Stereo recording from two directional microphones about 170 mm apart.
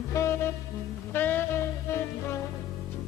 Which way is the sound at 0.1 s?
15° left (ahead or behind).